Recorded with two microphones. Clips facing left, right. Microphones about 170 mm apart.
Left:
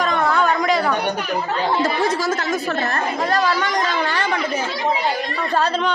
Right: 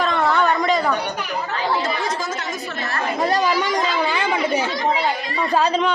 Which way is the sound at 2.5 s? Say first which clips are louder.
Left 6 dB; 50° left (ahead or behind).